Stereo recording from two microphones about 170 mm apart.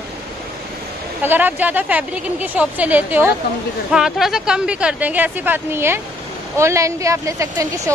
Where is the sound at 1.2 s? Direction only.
10° right (ahead or behind).